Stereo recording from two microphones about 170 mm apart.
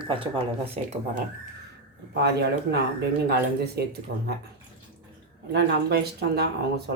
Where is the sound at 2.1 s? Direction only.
80° right.